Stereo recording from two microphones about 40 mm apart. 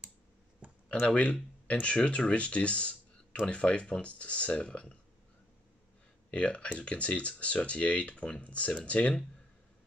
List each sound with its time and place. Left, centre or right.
0.6 s a sound: right
1.0 s speech: left
6.3 s speech: left